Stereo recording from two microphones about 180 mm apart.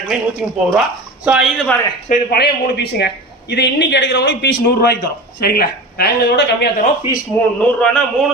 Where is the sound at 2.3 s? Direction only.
65° left (ahead or behind).